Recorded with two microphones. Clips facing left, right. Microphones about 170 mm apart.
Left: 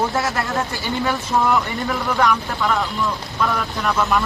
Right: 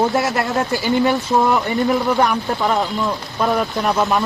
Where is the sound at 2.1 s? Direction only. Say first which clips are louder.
Right 2 dB; 35° right (ahead or behind).